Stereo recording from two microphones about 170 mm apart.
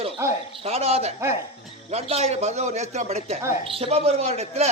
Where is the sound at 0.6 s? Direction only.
40° right (ahead or behind).